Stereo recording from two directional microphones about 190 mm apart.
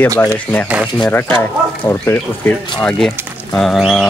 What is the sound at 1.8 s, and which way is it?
Speech, 15° left (ahead or behind).